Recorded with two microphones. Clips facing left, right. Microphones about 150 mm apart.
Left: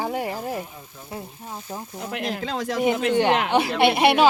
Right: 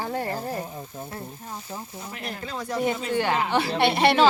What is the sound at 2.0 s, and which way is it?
Speech, 70° left (ahead or behind).